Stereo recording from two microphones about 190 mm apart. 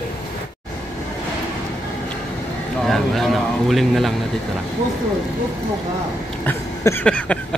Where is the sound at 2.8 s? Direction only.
Centre (ahead or behind).